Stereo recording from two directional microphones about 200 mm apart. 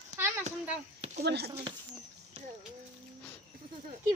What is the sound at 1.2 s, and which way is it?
Speech, 55° right (ahead or behind).